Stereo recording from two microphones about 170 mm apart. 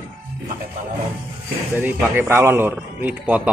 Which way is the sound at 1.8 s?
15° right (ahead or behind).